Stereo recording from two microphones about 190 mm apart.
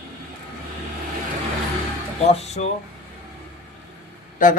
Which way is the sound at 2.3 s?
35° left (ahead or behind).